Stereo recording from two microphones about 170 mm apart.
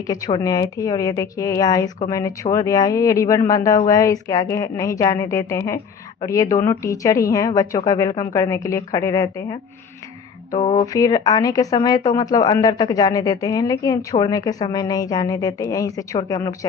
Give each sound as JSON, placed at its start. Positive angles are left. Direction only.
{"t": 0.3, "sound": "speech", "side_deg": 25}
{"t": 10.8, "sound": "speech", "side_deg": 20}